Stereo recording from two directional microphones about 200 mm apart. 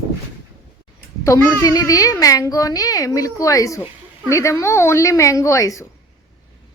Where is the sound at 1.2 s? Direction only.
15° left (ahead or behind).